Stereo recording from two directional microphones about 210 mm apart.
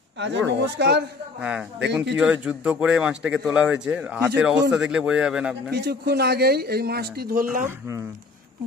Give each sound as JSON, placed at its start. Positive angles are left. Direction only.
{"t": 0.2, "sound": "speech", "side_deg": -60}
{"t": 1.4, "sound": "a man's voice", "side_deg": -5}
{"t": 5.7, "sound": "speech", "side_deg": -50}